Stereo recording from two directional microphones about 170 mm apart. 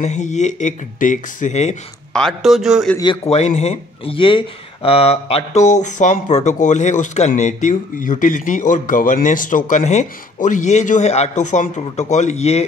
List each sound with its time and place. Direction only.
0.0 s speech: 45° left (ahead or behind)
2.1 s a man's voice: centre (ahead or behind)
3.3 s speech: 40° left (ahead or behind)